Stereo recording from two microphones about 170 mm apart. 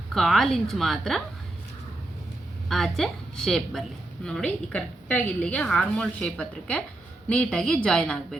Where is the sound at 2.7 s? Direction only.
Centre (ahead or behind).